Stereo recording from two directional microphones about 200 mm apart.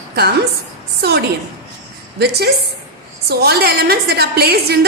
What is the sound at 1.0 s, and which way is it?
A woman's voice, 55° right (ahead or behind).